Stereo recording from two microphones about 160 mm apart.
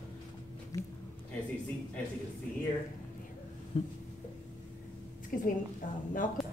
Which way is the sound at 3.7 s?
35° left (ahead or behind).